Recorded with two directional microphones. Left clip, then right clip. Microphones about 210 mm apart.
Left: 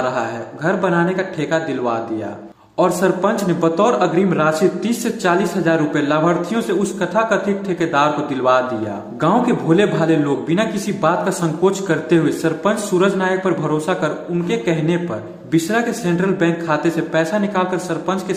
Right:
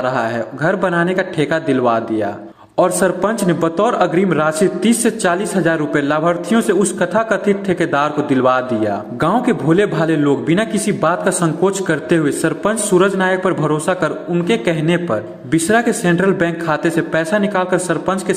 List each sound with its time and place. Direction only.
0.0 s a man's voice: 25° right (ahead or behind)